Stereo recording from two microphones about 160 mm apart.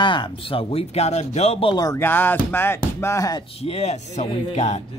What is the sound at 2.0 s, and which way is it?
Speech, 10° left (ahead or behind).